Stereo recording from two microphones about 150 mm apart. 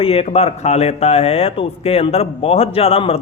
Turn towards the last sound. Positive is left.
turn(degrees=40)  # may be behind; listen again after turning